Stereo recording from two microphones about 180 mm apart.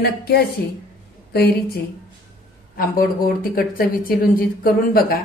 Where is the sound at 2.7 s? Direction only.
55° left (ahead or behind).